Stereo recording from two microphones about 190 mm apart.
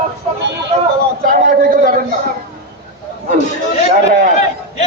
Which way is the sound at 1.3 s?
50° right (ahead or behind).